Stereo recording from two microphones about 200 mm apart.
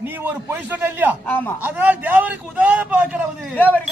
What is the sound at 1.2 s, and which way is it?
Speech, 10° left (ahead or behind).